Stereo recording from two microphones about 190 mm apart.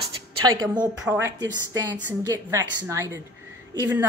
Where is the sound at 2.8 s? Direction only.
15° right (ahead or behind).